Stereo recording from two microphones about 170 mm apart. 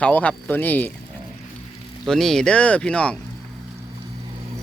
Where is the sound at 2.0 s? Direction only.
Centre (ahead or behind).